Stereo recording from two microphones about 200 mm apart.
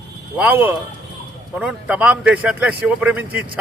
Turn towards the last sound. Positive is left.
turn(degrees=-10)  # may be behind; listen again after turning